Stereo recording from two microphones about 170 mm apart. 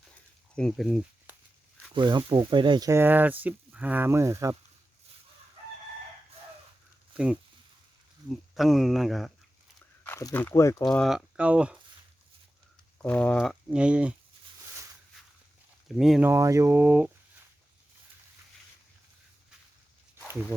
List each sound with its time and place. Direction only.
0.5 s speech: 5° left (ahead or behind)
1.9 s speech: 25° right (ahead or behind)
7.1 s speech: 5° right (ahead or behind)
10.0 s speech: 15° left (ahead or behind)
10.9 s speech: centre (ahead or behind)
13.0 s speech: 10° left (ahead or behind)
13.7 s speech: 5° right (ahead or behind)
16.0 s speech: centre (ahead or behind)
16.3 s speech: 20° right (ahead or behind)